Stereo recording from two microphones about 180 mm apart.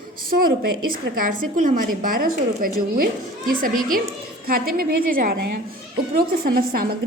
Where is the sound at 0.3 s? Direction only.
55° right (ahead or behind).